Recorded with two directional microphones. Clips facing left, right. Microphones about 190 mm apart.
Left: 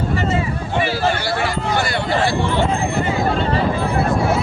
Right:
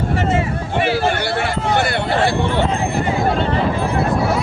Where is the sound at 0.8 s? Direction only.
60° right (ahead or behind).